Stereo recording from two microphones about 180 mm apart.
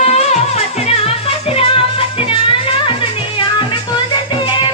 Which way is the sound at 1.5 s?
30° left (ahead or behind).